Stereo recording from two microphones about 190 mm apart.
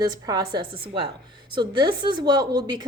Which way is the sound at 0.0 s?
20° right (ahead or behind).